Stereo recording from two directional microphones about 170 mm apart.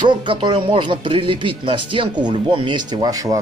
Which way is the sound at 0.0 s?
30° right (ahead or behind).